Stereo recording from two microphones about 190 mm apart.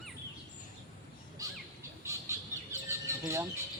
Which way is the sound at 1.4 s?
20° right (ahead or behind).